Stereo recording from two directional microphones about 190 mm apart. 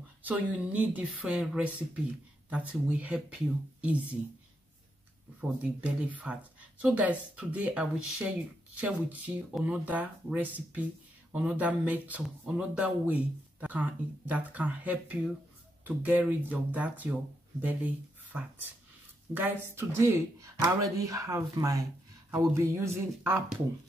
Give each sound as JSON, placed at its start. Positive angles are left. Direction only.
{"t": 0.2, "sound": "speech", "side_deg": -10}
{"t": 5.4, "sound": "speech", "side_deg": -5}